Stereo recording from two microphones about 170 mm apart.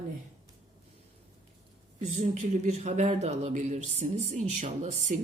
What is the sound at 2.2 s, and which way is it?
Speech, 45° right (ahead or behind).